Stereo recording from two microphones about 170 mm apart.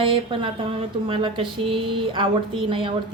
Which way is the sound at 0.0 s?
30° right (ahead or behind).